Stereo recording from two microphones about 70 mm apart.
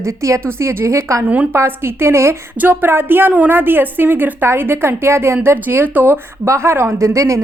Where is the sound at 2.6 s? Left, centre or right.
Right.